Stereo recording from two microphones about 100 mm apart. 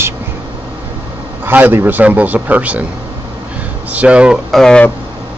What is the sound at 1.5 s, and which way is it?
A man's voice, 20° right (ahead or behind).